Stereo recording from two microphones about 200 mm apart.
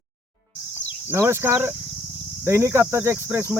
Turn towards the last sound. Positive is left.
turn(degrees=-10)  # may be behind; listen again after turning